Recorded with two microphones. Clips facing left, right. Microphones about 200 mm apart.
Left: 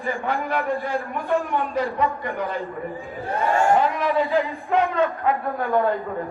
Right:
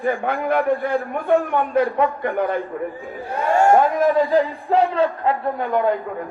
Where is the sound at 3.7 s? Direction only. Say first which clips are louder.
Right 4 dB; 45° right (ahead or behind); by 5.9 s 20° right (ahead or behind).